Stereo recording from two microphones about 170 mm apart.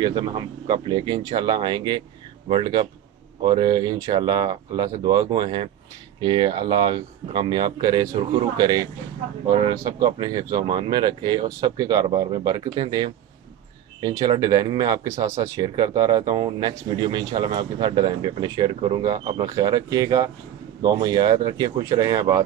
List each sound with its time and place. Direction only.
0.0 s speech: 25° right (ahead or behind)